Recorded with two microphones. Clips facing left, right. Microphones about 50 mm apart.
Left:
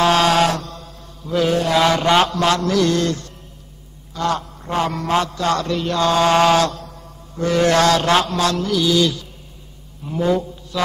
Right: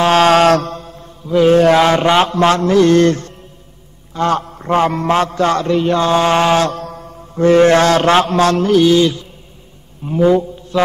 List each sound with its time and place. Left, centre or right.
0.0 s mantra: right
0.7 s mantra: right
6.7 s mantra: right
10.0 s speech: right